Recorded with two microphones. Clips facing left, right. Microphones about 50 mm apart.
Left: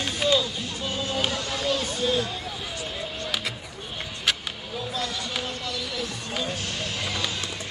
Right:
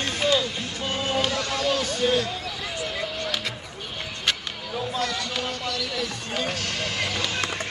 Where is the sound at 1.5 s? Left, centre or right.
Right.